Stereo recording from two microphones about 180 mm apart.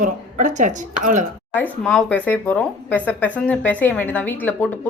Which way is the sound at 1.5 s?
5° left (ahead or behind).